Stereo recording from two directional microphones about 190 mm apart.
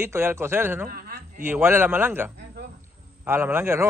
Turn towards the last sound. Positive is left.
turn(degrees=-15)  # may be behind; listen again after turning